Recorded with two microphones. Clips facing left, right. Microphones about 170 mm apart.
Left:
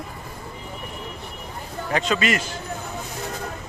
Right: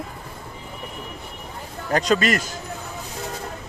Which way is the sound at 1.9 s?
40° right (ahead or behind).